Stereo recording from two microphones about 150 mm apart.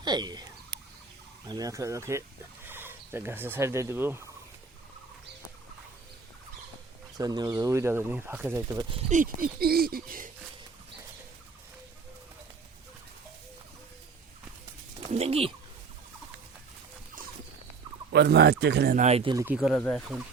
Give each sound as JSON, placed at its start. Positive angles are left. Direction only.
{"t": 0.0, "sound": "speech", "side_deg": -30}
{"t": 1.5, "sound": "speech", "side_deg": -25}
{"t": 7.2, "sound": "speech", "side_deg": -25}
{"t": 9.0, "sound": "speech", "side_deg": -60}
{"t": 15.1, "sound": "speech", "side_deg": -45}
{"t": 18.3, "sound": "speech", "side_deg": -90}
{"t": 18.9, "sound": "speech", "side_deg": -45}
{"t": 19.5, "sound": "speech", "side_deg": -5}
{"t": 19.8, "sound": "speech", "side_deg": 5}